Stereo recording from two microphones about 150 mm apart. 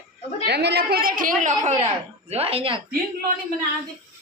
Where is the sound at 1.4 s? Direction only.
55° right (ahead or behind); by 2.8 s 35° right (ahead or behind).